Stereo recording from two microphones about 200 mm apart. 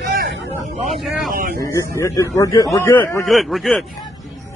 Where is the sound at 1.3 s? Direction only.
45° right (ahead or behind).